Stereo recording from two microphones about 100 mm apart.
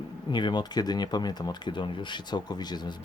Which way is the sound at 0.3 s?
50° left (ahead or behind).